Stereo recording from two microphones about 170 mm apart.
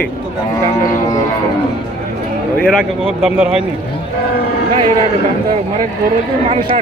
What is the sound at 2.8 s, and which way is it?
Speech, 5° right (ahead or behind).